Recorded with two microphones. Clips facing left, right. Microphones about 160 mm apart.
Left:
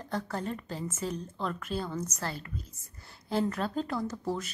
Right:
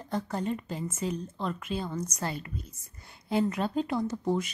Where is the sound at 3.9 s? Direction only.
20° right (ahead or behind).